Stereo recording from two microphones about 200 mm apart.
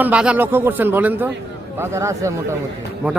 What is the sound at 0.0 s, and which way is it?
A man's voice, 5° right (ahead or behind).